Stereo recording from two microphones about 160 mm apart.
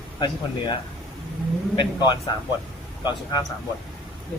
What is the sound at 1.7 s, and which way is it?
Speech, 25° left (ahead or behind).